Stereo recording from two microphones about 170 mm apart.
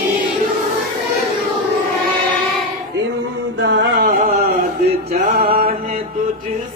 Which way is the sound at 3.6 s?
90° right.